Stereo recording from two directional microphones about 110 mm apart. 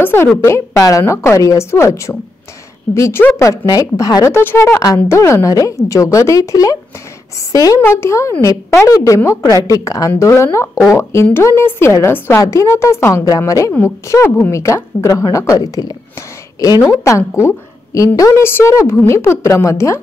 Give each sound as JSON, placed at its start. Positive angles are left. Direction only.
{"t": 0.0, "sound": "a woman's voice", "side_deg": 20}
{"t": 0.5, "sound": "a woman's voice", "side_deg": 30}
{"t": 4.3, "sound": "a woman's voice", "side_deg": 20}
{"t": 7.8, "sound": "a woman's voice", "side_deg": 25}